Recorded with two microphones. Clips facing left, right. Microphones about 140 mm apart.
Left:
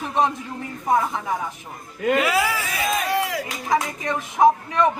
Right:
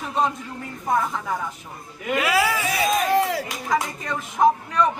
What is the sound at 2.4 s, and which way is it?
Speech, 15° right (ahead or behind).